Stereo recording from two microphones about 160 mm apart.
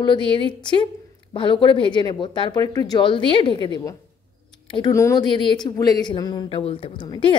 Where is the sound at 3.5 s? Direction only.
35° right (ahead or behind).